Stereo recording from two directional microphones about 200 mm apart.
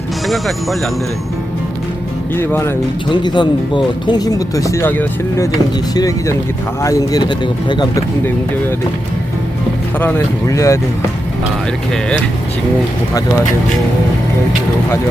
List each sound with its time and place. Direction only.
0.3 s speech: centre (ahead or behind)
2.3 s speech: 10° left (ahead or behind)
3.1 s speech: 25° left (ahead or behind)
10.0 s speech: 10° left (ahead or behind)